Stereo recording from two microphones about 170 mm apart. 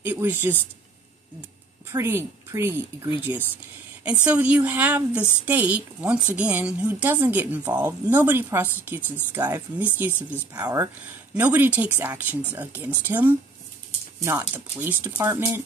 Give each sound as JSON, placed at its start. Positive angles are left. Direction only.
{"t": 0.0, "sound": "a woman's voice", "side_deg": -10}
{"t": 1.9, "sound": "a woman's voice", "side_deg": -15}